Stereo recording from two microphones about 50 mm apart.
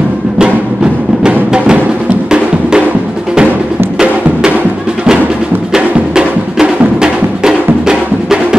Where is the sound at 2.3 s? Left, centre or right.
Centre.